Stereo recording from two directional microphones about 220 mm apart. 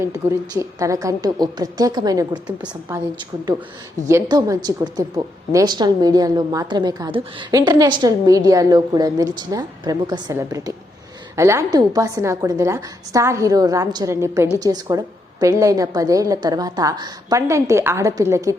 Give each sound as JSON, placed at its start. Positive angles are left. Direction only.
{"t": 0.0, "sound": "a woman's voice", "side_deg": -15}